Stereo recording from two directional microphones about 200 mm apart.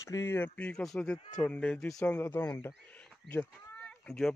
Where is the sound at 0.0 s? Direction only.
15° left (ahead or behind).